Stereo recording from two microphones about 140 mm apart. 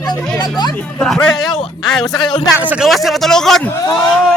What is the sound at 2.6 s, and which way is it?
Speech, 10° right (ahead or behind).